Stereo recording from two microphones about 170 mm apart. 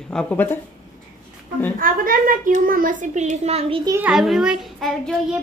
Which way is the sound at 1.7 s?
55° right (ahead or behind).